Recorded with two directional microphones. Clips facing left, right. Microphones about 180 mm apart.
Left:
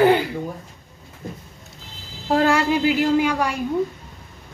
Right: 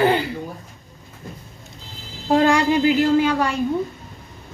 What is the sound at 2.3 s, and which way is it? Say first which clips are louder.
A child's voice: right 2 dB; 5° left (ahead or behind).